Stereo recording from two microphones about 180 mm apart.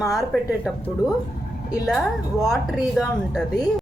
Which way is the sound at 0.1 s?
Centre (ahead or behind).